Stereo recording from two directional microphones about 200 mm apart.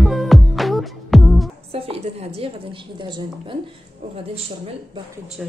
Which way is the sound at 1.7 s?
30° right (ahead or behind).